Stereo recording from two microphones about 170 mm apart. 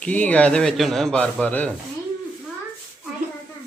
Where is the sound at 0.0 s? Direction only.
10° left (ahead or behind).